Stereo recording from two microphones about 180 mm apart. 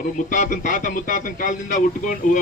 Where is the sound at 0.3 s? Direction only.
45° left (ahead or behind).